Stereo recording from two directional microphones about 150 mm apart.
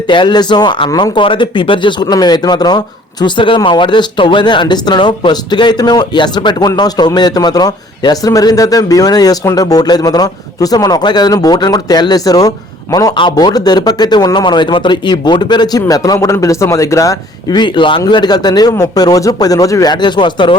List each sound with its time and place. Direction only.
0.1 s speech: 30° left (ahead or behind)